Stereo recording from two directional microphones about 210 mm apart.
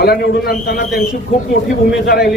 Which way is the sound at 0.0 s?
50° left (ahead or behind).